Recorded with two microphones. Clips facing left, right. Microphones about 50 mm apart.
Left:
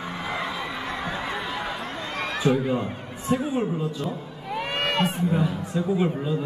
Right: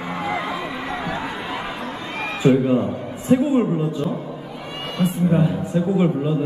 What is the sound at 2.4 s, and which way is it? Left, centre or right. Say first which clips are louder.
A man's voice: right 7 dB; right.